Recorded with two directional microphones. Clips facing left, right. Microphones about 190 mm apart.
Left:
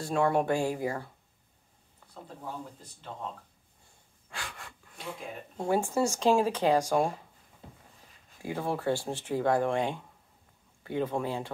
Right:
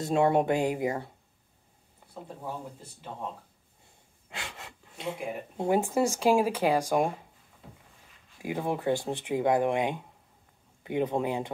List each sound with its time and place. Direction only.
0.0 s speech: 20° right (ahead or behind)
4.3 s speech: 25° right (ahead or behind)
8.4 s speech: 15° right (ahead or behind)